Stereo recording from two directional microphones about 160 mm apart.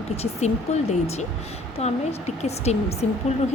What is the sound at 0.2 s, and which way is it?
A woman's voice, 40° left (ahead or behind).